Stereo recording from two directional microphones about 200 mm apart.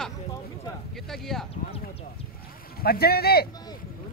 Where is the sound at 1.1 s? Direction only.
Centre (ahead or behind).